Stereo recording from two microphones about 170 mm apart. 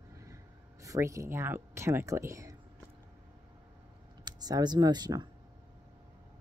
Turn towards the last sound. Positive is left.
turn(degrees=-25)  # may be behind; listen again after turning